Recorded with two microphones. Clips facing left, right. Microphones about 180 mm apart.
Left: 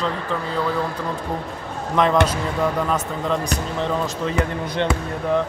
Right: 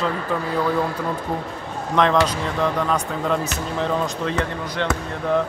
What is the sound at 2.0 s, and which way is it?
Speech, 5° left (ahead or behind).